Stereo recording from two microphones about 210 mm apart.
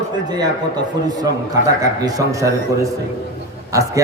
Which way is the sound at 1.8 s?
15° right (ahead or behind).